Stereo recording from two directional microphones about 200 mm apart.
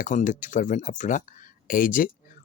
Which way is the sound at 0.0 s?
40° left (ahead or behind).